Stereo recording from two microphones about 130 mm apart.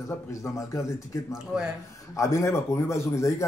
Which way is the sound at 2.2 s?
20° left (ahead or behind).